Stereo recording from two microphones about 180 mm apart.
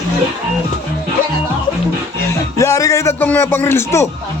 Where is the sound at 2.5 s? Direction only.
15° left (ahead or behind).